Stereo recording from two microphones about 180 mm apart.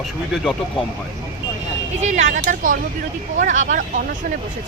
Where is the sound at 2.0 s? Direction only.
45° right (ahead or behind).